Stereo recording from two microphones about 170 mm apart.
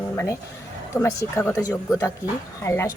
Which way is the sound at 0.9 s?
15° left (ahead or behind).